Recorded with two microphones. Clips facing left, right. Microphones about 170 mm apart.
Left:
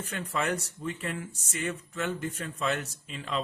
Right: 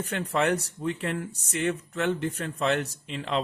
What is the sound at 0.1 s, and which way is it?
Speech, 65° right (ahead or behind).